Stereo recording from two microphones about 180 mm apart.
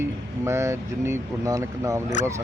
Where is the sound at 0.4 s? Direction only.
15° right (ahead or behind).